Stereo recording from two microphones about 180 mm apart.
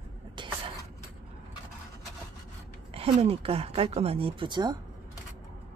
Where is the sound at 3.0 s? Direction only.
35° right (ahead or behind).